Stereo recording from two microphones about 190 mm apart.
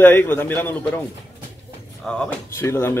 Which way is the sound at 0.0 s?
10° left (ahead or behind).